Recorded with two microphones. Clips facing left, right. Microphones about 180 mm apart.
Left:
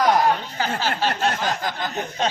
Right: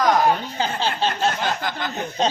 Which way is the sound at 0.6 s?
25° right (ahead or behind).